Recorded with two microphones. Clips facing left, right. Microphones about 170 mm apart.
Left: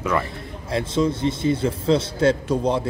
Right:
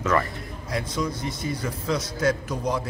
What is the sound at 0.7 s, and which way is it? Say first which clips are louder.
A man's voice: left 7 dB; 25° left (ahead or behind).